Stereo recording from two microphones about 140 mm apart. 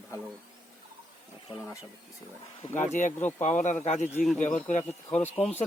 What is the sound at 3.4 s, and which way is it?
Speech, 60° left (ahead or behind).